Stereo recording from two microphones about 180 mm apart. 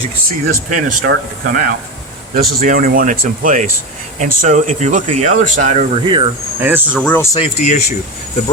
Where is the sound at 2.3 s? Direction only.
55° right (ahead or behind).